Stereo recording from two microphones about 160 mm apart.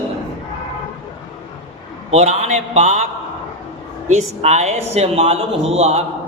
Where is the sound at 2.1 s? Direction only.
45° right (ahead or behind).